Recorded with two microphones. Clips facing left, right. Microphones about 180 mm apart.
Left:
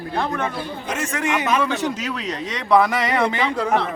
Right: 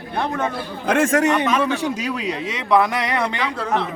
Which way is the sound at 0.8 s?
55° right (ahead or behind).